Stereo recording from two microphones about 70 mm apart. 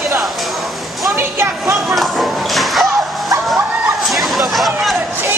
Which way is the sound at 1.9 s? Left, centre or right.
Centre.